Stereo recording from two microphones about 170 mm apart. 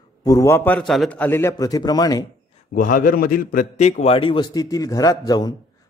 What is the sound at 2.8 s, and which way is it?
A man's voice, 55° left (ahead or behind).